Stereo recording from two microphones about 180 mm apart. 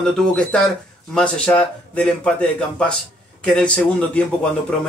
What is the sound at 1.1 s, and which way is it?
Speech, 5° left (ahead or behind).